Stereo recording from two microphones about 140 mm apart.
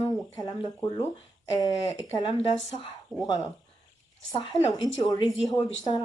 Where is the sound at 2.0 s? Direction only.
25° left (ahead or behind).